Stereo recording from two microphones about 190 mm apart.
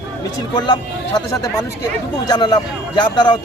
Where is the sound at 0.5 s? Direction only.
20° left (ahead or behind).